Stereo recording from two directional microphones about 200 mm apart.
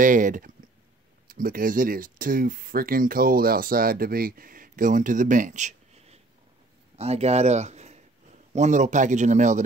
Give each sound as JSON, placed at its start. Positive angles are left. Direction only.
{"t": 0.0, "sound": "speech", "side_deg": -40}